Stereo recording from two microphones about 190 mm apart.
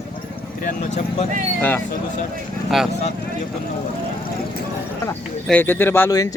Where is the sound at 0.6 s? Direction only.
40° left (ahead or behind).